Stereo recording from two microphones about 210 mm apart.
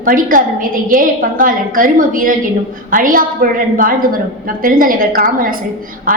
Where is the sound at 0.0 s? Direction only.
40° right (ahead or behind).